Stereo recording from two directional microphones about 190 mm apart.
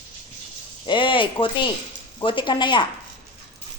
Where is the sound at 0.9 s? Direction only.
25° left (ahead or behind).